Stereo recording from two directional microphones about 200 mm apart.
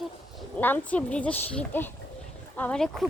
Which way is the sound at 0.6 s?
10° left (ahead or behind).